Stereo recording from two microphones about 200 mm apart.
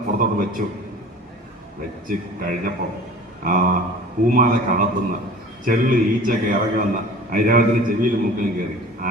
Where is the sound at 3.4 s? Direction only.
45° right (ahead or behind).